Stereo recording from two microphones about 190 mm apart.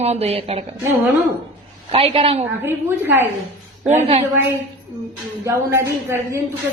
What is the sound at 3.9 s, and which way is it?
Speech, 35° right (ahead or behind).